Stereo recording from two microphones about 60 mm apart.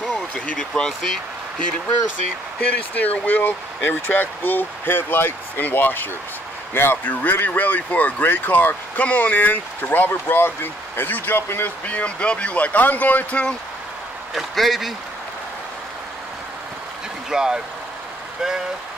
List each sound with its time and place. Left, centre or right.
0.6 s speech: centre
2.7 s speech: left
11.8 s speech: left
14.3 s speech: centre
17.3 s speech: centre